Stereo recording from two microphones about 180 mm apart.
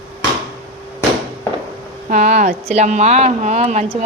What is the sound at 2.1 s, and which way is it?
Speech, 45° right (ahead or behind).